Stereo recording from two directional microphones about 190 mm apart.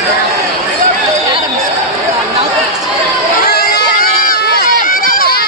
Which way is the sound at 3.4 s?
50° left (ahead or behind).